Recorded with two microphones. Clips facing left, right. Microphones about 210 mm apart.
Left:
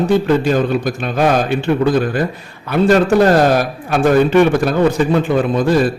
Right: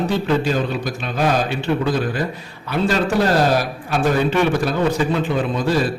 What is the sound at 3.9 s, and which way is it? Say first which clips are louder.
A man's voice: left 6 dB; 55° left (ahead or behind).